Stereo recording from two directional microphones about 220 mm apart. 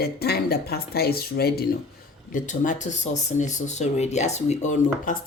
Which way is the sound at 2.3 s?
35° left (ahead or behind).